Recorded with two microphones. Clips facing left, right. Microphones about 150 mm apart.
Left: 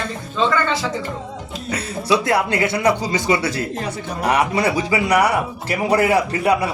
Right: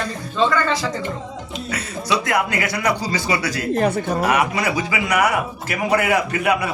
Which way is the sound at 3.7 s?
55° right (ahead or behind).